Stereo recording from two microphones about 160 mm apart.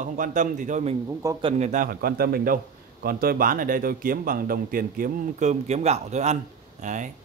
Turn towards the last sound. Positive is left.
turn(degrees=-50)  # may be behind; listen again after turning